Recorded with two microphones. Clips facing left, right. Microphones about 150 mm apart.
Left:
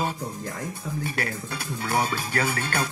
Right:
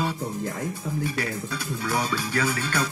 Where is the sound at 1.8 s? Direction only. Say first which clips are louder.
Left 1 dB; 50° left (ahead or behind).